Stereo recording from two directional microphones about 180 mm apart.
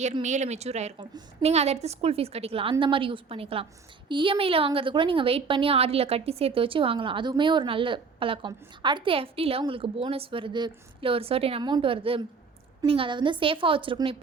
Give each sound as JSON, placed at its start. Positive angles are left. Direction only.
{"t": 0.2, "sound": "a woman's voice", "side_deg": -40}